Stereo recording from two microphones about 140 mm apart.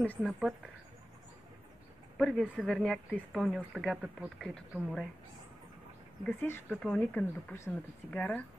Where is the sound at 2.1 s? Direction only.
Centre (ahead or behind).